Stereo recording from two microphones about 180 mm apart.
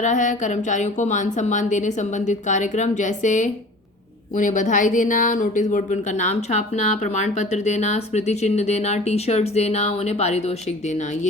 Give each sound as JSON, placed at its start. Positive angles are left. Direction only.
{"t": 0.0, "sound": "a woman's voice", "side_deg": 45}